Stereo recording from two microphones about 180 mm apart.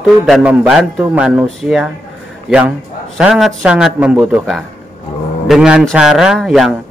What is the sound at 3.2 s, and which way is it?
Speech, centre (ahead or behind).